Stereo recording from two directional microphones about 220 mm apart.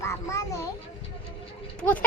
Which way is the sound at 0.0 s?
10° left (ahead or behind).